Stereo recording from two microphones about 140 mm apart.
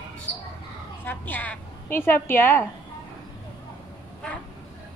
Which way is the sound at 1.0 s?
15° left (ahead or behind).